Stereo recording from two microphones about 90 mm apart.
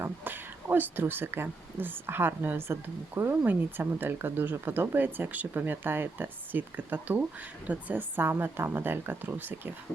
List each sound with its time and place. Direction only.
0.0 s speech: 20° right (ahead or behind)